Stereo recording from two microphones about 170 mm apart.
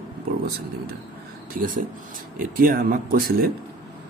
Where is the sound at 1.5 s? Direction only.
55° right (ahead or behind).